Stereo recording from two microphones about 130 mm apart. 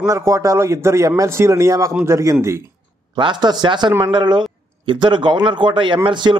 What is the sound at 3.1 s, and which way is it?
A man's voice, 35° right (ahead or behind).